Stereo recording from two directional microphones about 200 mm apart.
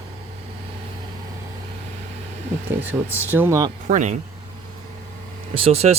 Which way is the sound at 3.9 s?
40° right (ahead or behind).